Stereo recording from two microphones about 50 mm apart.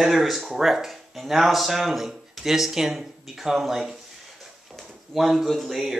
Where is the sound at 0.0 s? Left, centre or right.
Centre.